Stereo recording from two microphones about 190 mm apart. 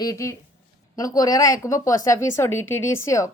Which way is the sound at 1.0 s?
20° left (ahead or behind).